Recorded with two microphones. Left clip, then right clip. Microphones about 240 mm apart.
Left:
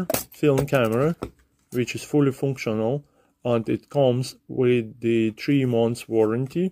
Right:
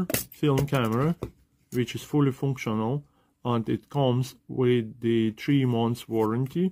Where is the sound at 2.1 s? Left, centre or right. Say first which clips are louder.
Left 5 dB; right.